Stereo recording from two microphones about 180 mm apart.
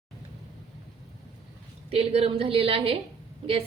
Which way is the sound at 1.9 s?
35° right (ahead or behind).